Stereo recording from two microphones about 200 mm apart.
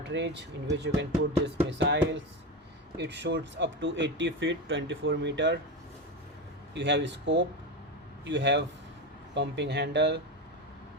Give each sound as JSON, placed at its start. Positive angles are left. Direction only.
{"t": 0.0, "sound": "speech", "side_deg": -60}
{"t": 3.0, "sound": "speech", "side_deg": -60}
{"t": 6.7, "sound": "speech", "side_deg": -60}